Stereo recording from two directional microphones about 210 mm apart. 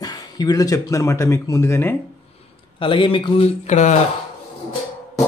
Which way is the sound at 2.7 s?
25° left (ahead or behind).